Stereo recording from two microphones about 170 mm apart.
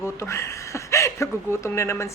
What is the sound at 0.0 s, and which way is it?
A woman's voice, 15° left (ahead or behind).